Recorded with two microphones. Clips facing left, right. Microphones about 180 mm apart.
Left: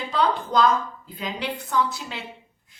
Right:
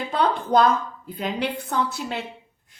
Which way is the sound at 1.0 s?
55° right (ahead or behind).